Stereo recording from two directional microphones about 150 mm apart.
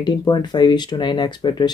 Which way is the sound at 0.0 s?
30° left (ahead or behind).